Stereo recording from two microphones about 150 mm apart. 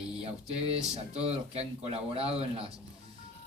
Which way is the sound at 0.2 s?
45° right (ahead or behind).